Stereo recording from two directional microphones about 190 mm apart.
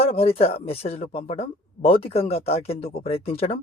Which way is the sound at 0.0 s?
30° left (ahead or behind).